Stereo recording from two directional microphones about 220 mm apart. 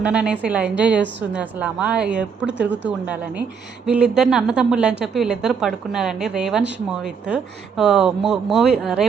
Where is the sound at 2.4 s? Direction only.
55° right (ahead or behind).